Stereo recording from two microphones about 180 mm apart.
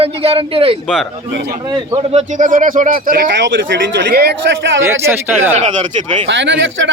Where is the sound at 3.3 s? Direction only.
80° right.